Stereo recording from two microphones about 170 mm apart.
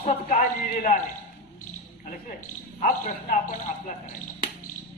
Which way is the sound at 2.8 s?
45° left (ahead or behind).